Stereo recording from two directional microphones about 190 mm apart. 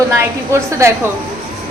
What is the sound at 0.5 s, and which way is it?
Speech, 15° right (ahead or behind).